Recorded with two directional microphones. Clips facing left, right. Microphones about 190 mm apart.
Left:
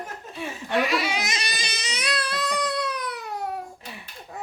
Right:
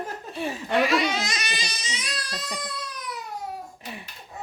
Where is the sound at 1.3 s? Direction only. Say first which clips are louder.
Even; 30° left (ahead or behind).